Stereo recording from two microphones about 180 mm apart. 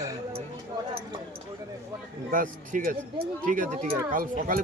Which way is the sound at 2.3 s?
50° right (ahead or behind).